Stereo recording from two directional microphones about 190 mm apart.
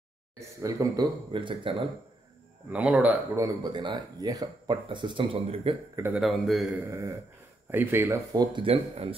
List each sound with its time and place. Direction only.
0.4 s speech: 15° right (ahead or behind)
2.7 s speech: 5° right (ahead or behind); by 5.8 s 30° right (ahead or behind)
5.9 s speech: 10° right (ahead or behind)
6.2 s a man's voice: centre (ahead or behind)
6.9 s speech: 15° right (ahead or behind)